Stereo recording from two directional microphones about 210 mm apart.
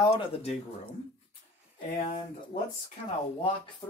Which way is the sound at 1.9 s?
35° left (ahead or behind).